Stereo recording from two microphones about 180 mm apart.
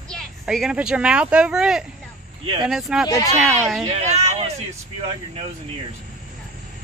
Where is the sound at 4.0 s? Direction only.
40° right (ahead or behind).